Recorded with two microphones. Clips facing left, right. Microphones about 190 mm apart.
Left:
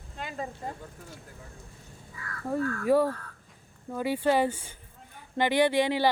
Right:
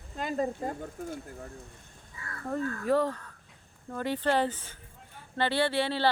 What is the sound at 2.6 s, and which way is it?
Speech, 20° right (ahead or behind).